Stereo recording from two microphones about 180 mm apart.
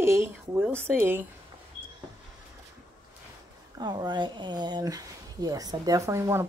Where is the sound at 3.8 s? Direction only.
25° right (ahead or behind).